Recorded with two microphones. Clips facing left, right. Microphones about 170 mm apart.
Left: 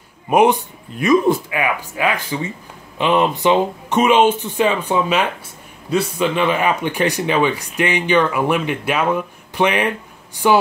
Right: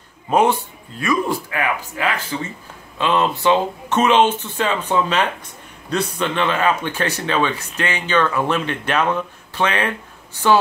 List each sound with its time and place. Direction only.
0.3 s speech: 15° left (ahead or behind)